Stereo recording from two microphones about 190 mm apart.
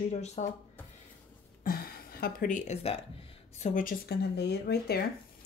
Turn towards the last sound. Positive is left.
turn(degrees=60)  # may be behind; listen again after turning